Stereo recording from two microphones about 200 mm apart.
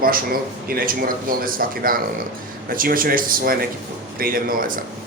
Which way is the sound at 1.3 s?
45° right (ahead or behind).